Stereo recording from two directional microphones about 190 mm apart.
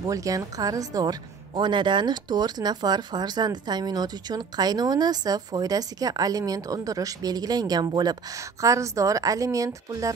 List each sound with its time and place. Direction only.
0.0 s a woman's voice: 20° right (ahead or behind)